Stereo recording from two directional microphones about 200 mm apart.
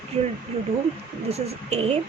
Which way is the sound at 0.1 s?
30° right (ahead or behind).